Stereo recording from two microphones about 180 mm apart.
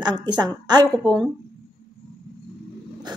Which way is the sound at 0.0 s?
25° right (ahead or behind).